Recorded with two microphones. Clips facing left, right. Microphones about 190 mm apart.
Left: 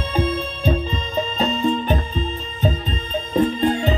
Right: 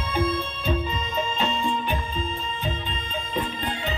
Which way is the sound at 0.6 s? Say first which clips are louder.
Left 5 dB; 35° left (ahead or behind).